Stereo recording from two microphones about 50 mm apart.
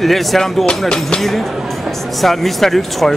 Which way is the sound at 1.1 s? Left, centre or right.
Centre.